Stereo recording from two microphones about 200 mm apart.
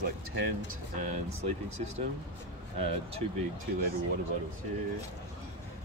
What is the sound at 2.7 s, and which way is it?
Speech, 30° right (ahead or behind).